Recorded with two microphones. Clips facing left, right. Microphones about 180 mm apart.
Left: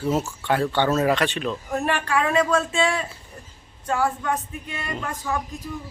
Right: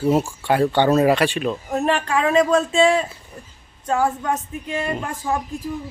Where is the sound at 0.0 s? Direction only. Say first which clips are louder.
Right 5 dB; 15° right (ahead or behind).